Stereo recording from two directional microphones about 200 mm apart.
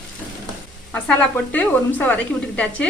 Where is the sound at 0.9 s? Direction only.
10° left (ahead or behind).